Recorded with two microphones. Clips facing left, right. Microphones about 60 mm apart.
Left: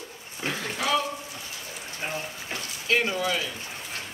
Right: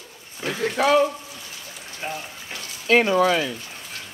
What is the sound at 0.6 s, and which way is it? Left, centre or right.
Speech, right.